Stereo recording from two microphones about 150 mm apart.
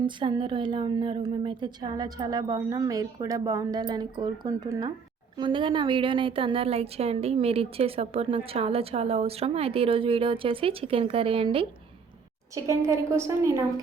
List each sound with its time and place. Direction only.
0.0 s a woman's voice: 30° right (ahead or behind)
12.6 s a woman's voice: 20° right (ahead or behind)